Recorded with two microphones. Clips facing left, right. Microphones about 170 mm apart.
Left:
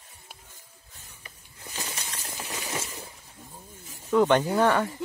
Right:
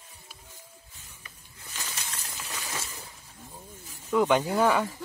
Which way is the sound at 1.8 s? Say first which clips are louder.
Left 2 dB; 30° left (ahead or behind).